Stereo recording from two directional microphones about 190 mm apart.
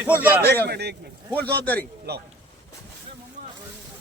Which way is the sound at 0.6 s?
55° right (ahead or behind).